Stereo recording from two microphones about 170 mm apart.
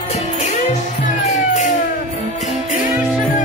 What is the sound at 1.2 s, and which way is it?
Music, 40° left (ahead or behind).